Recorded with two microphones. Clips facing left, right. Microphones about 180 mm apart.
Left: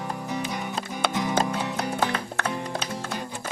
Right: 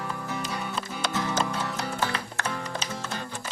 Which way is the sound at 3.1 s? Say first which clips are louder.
Left 2 dB; 15° left (ahead or behind).